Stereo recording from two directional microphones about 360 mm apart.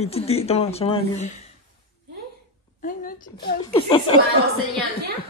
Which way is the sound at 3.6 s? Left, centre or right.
Centre.